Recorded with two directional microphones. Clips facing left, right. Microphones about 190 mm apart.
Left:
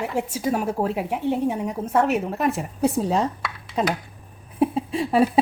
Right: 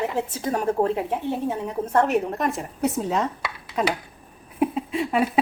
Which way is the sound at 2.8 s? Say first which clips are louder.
Left 2 dB; 30° left (ahead or behind).